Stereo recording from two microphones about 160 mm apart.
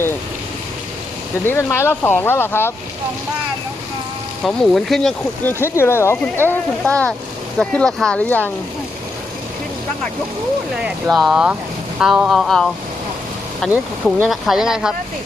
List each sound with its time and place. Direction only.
1.5 s speech: 15° left (ahead or behind)
4.4 s speech: centre (ahead or behind)
10.8 s speech: 5° right (ahead or behind)